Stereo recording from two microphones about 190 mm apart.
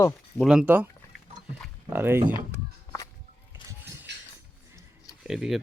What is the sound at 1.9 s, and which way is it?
Speech, 10° right (ahead or behind).